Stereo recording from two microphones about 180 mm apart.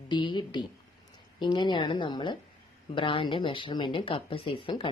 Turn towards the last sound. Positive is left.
turn(degrees=30)  # may be behind; listen again after turning